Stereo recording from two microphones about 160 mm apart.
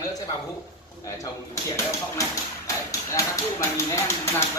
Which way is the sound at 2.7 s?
20° left (ahead or behind).